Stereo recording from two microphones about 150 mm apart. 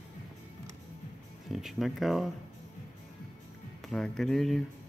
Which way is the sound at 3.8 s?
5° left (ahead or behind).